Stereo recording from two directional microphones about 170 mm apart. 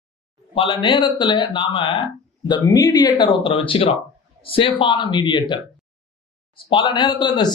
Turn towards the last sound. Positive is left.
turn(degrees=25)  # may be behind; listen again after turning